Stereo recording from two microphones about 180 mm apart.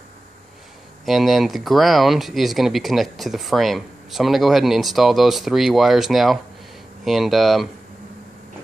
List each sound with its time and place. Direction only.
1.0 s speech: centre (ahead or behind)